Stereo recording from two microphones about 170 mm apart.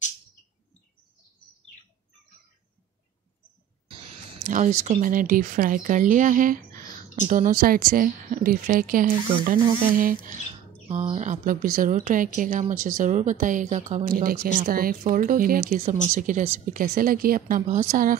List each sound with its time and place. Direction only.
4.4 s speech: 50° right (ahead or behind)
10.9 s a woman's voice: 40° right (ahead or behind)